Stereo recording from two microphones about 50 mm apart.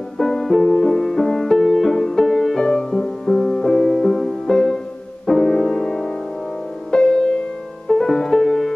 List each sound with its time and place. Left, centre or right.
0.2 s music: centre